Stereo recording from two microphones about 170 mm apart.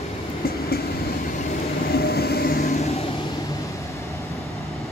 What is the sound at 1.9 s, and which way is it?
Vehicle, 65° left (ahead or behind).